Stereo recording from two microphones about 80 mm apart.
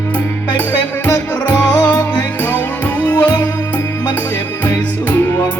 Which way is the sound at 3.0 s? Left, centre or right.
Left.